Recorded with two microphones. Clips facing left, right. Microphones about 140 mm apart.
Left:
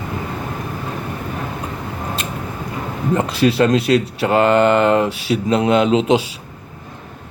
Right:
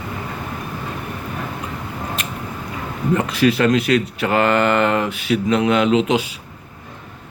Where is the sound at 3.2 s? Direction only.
30° left (ahead or behind).